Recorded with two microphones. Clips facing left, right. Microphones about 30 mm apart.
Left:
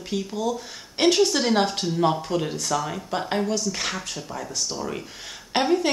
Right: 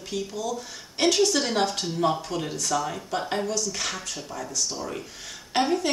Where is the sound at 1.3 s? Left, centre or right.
Centre.